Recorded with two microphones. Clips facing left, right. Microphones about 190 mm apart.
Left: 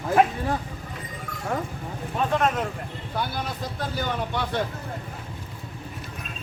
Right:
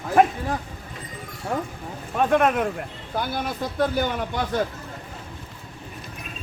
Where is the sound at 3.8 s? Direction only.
50° right (ahead or behind).